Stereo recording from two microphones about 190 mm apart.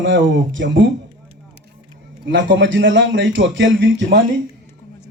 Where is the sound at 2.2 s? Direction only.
70° right (ahead or behind).